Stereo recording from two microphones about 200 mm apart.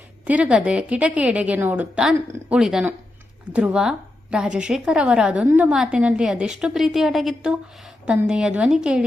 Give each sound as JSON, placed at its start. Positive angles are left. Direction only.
{"t": 0.3, "sound": "a woman's voice", "side_deg": -5}